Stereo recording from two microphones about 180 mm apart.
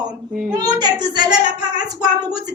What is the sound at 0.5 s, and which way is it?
Speech, 25° right (ahead or behind).